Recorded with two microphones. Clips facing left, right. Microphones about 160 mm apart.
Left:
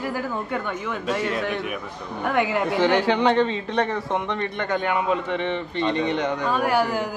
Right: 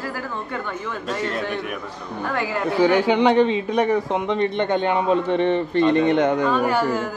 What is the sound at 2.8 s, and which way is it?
A man's voice, 15° right (ahead or behind).